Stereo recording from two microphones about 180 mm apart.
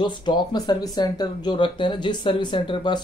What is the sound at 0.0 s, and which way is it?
Speech, 25° left (ahead or behind).